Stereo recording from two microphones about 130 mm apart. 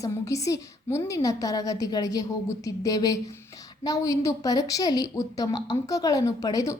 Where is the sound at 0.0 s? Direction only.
25° left (ahead or behind).